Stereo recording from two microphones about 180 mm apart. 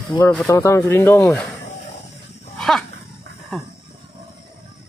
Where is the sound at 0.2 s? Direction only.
10° left (ahead or behind).